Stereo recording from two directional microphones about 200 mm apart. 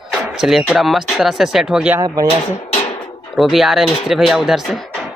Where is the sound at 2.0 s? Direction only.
20° right (ahead or behind).